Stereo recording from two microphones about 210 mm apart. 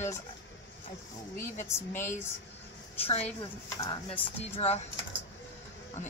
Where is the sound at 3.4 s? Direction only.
15° left (ahead or behind).